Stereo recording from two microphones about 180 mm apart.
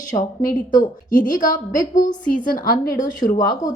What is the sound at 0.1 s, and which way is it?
A woman's voice, 45° left (ahead or behind).